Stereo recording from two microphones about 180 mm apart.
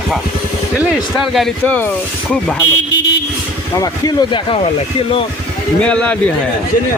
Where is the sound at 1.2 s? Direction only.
Centre (ahead or behind).